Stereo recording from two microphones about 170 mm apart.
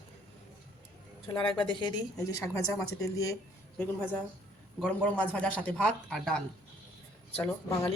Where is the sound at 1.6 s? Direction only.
25° left (ahead or behind).